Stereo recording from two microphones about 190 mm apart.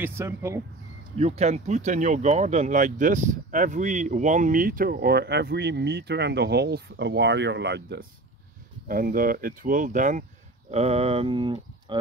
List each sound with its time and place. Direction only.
0.0 s speech: 10° right (ahead or behind)
1.1 s speech: 35° right (ahead or behind); by 8.0 s 65° right (ahead or behind)
8.8 s speech: 50° right (ahead or behind); by 12.0 s 25° right (ahead or behind)